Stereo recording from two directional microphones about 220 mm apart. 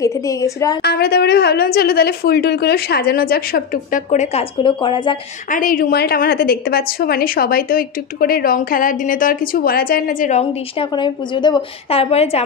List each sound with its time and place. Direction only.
0.0 s a woman's voice: 15° left (ahead or behind)
0.8 s a woman's voice: 45° left (ahead or behind); by 5.1 s 20° left (ahead or behind)
5.5 s a woman's voice: 40° left (ahead or behind)
10.4 s a woman's voice: 20° left (ahead or behind)